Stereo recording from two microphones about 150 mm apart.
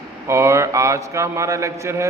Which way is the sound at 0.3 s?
20° right (ahead or behind).